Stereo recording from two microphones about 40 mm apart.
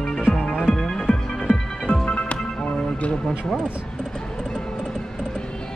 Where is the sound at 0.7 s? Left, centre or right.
Centre.